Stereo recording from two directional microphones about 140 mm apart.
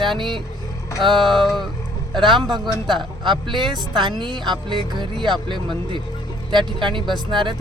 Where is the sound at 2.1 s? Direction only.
35° right (ahead or behind).